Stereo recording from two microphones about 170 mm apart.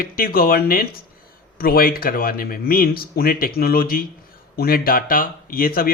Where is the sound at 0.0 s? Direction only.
60° left (ahead or behind).